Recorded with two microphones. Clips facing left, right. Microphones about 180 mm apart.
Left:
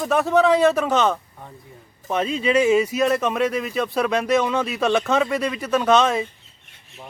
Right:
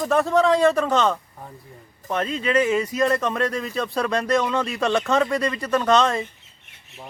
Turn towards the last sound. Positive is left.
turn(degrees=5)  # may be behind; listen again after turning